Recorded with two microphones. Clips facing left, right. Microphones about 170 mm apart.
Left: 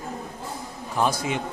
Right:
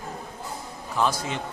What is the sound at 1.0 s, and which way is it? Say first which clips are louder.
Speech: left 2 dB; 15° left (ahead or behind).